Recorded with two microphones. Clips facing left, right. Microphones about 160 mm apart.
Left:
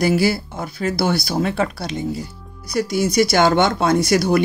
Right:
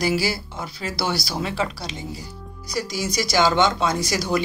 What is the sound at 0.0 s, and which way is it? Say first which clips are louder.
Speech: left 6 dB; 55° left (ahead or behind).